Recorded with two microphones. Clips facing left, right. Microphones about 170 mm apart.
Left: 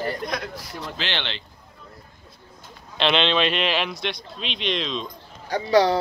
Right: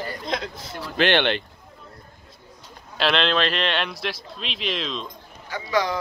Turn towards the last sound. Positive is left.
turn(degrees=35)  # may be behind; listen again after turning